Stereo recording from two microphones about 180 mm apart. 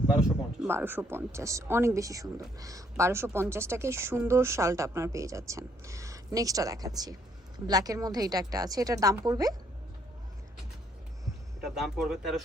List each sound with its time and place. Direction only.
0.3 s speech: 10° right (ahead or behind)
11.6 s speech: centre (ahead or behind)